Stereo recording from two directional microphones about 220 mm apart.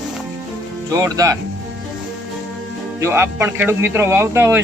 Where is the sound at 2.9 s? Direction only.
10° right (ahead or behind).